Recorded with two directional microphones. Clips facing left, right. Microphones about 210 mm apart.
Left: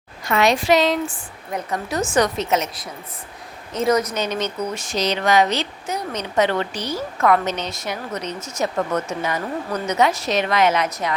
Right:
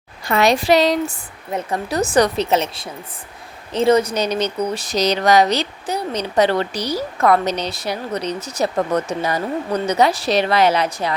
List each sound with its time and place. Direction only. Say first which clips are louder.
0.3 s speech: right 2 dB; 35° right (ahead or behind)